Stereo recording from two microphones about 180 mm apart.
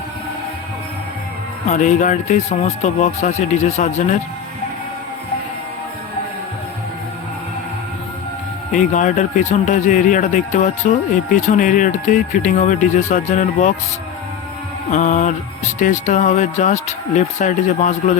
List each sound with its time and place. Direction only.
1.7 s speech: 45° left (ahead or behind)
8.7 s speech: 45° left (ahead or behind)
14.8 s speech: 45° left (ahead or behind)